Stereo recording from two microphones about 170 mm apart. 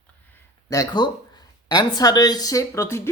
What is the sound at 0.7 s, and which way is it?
Speech, 25° left (ahead or behind).